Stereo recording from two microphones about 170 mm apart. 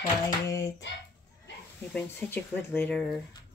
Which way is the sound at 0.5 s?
20° left (ahead or behind).